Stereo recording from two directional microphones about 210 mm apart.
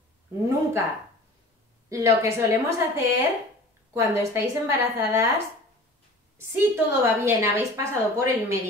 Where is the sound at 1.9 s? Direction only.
15° right (ahead or behind).